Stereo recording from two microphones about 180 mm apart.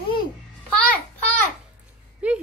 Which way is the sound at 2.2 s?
10° right (ahead or behind).